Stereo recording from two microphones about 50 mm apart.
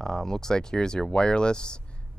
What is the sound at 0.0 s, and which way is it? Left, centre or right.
Speech, centre.